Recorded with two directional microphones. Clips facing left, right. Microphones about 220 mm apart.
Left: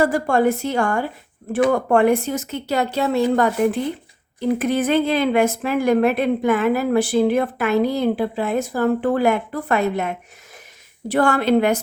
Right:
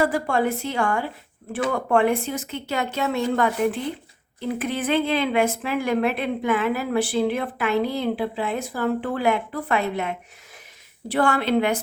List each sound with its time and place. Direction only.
0.0 s a woman's voice: 45° left (ahead or behind)